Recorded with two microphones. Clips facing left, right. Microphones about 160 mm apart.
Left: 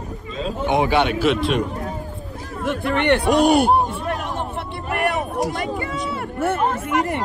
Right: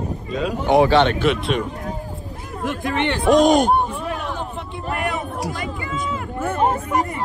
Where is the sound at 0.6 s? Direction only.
20° left (ahead or behind); by 1.7 s centre (ahead or behind).